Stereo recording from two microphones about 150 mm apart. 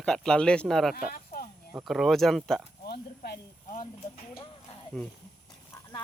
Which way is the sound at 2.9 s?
90° left.